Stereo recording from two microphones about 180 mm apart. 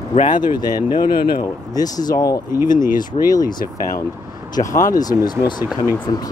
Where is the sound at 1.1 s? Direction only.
55° left (ahead or behind).